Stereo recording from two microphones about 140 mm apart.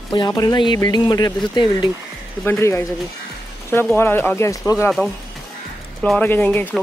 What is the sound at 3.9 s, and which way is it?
Speech, 15° left (ahead or behind).